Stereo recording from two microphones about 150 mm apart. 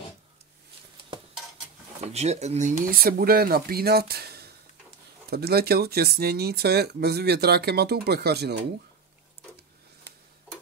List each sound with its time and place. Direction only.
2.0 s speech: 45° right (ahead or behind)
2.9 s speech: 80° right